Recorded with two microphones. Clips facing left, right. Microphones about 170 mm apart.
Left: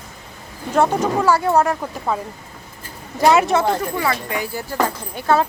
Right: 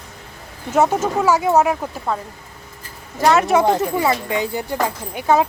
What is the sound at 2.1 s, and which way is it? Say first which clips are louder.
Speech: left 1 dB; 5° left (ahead or behind).